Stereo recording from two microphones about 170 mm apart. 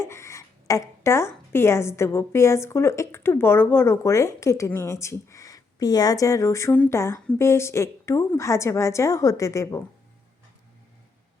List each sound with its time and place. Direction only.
0.0 s a woman's voice: 15° left (ahead or behind)